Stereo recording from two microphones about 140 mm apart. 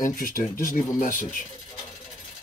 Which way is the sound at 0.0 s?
80° left.